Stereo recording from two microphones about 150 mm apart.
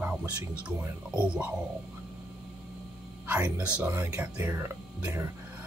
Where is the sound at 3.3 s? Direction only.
10° right (ahead or behind).